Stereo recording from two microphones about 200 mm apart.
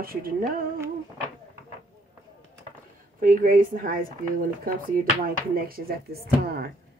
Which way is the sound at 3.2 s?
45° right (ahead or behind).